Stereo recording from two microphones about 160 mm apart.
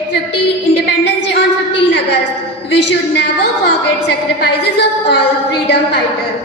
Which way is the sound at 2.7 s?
90° left.